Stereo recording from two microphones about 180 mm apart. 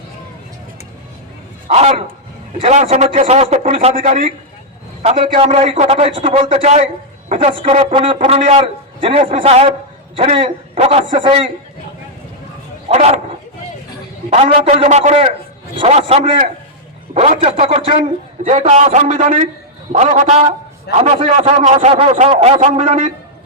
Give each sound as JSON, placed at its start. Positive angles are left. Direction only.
{"t": 1.6, "sound": "a man's voice", "side_deg": -35}
{"t": 3.8, "sound": "speech", "side_deg": -45}
{"t": 5.0, "sound": "a man's voice", "side_deg": -35}
{"t": 12.9, "sound": "a man's voice", "side_deg": -35}
{"t": 14.3, "sound": "a man's voice", "side_deg": -35}